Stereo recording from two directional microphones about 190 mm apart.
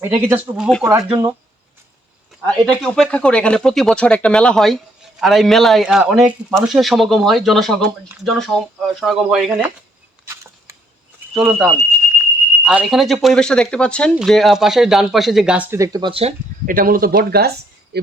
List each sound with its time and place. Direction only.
0.0 s speech: 10° right (ahead or behind)
0.9 s speech: 20° right (ahead or behind)
2.5 s a man's voice: 5° left (ahead or behind)
10.7 s a sound: 15° right (ahead or behind)
11.3 s a man's voice: 5° right (ahead or behind); by 16.3 s 30° right (ahead or behind)
16.6 s speech: 45° right (ahead or behind)